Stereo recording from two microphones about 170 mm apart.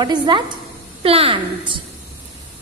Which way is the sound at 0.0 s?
25° right (ahead or behind).